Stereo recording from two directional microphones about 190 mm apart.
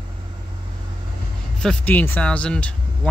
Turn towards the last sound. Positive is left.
turn(degrees=5)  # may be behind; listen again after turning